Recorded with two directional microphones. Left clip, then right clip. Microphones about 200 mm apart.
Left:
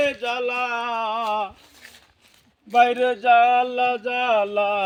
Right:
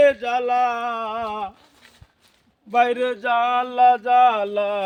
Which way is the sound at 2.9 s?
15° right (ahead or behind).